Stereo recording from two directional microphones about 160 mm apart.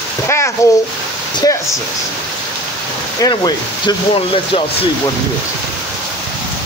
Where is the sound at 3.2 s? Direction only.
25° left (ahead or behind).